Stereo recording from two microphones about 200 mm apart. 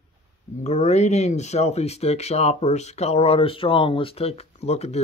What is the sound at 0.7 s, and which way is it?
Speech, 35° left (ahead or behind).